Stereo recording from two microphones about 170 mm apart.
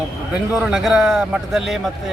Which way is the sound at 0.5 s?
Centre (ahead or behind).